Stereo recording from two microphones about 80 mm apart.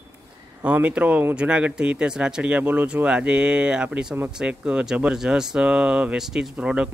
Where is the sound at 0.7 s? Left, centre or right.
Centre.